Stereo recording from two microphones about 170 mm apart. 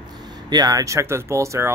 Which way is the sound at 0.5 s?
20° right (ahead or behind).